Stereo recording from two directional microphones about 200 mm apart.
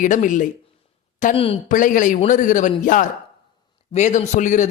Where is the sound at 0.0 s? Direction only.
40° left (ahead or behind).